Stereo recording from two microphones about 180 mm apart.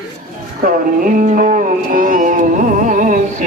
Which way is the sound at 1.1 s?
50° right (ahead or behind).